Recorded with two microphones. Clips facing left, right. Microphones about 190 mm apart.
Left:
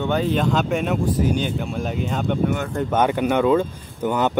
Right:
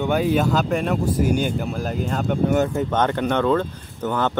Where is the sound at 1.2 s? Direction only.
10° right (ahead or behind).